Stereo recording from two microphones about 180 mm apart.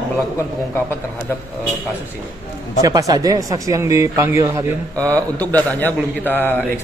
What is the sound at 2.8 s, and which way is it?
Speech, 20° right (ahead or behind).